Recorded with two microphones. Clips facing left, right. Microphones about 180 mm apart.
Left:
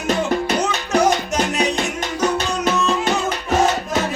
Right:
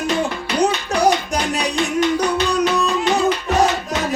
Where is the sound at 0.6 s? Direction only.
35° right (ahead or behind).